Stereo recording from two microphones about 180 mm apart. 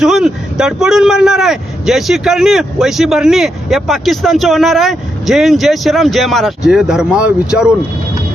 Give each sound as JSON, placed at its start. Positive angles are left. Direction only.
{"t": 0.0, "sound": "speech", "side_deg": 0}